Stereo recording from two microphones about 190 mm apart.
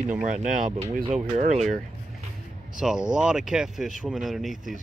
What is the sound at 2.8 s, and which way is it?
Speech, 5° right (ahead or behind).